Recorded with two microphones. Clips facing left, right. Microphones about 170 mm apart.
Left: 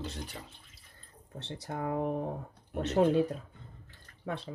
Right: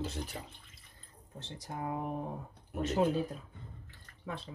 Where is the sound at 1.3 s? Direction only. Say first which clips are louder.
Left 4 dB; 65° left (ahead or behind).